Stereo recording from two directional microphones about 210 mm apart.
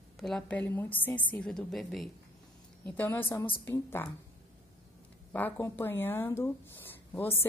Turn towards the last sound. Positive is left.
turn(degrees=10)  # may be behind; listen again after turning